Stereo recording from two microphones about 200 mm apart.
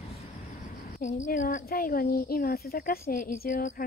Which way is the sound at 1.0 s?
40° left (ahead or behind).